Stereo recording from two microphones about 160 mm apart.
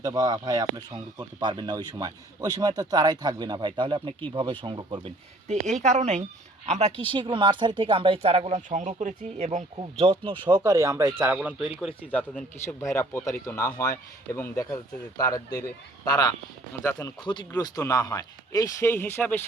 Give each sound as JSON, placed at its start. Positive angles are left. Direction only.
{"t": 0.0, "sound": "speech", "side_deg": -25}
{"t": 5.5, "sound": "a woman's voice", "side_deg": -45}
{"t": 10.0, "sound": "speech", "side_deg": -35}
{"t": 10.4, "sound": "speech", "side_deg": -25}
{"t": 12.1, "sound": "speech", "side_deg": 10}
{"t": 12.9, "sound": "speech", "side_deg": 15}